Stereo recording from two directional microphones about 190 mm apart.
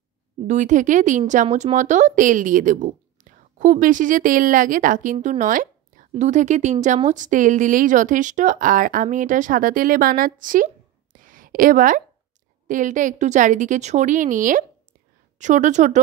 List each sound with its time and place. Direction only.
0.5 s a woman's voice: 40° right (ahead or behind)
11.1 s a sound: 45° right (ahead or behind)
12.6 s speech: 40° right (ahead or behind)